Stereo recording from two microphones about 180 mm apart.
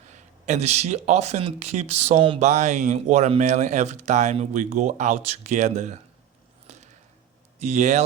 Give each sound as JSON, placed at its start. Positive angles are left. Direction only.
{"t": 0.1, "sound": "speech", "side_deg": -40}
{"t": 6.7, "sound": "a sound", "side_deg": -40}
{"t": 7.6, "sound": "speech", "side_deg": -40}